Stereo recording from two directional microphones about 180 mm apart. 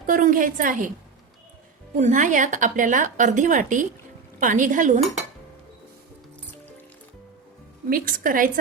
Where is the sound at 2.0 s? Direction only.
45° right (ahead or behind).